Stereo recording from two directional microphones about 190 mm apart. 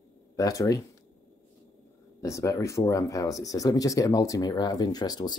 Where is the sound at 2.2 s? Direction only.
15° left (ahead or behind).